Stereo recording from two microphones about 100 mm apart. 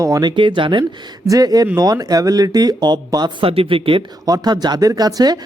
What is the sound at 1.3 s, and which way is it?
Speech, 40° right (ahead or behind).